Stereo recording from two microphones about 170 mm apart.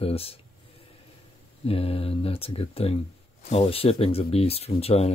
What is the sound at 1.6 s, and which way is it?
Speech, 35° left (ahead or behind).